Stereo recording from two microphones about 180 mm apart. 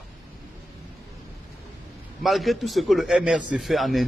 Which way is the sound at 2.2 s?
Centre (ahead or behind).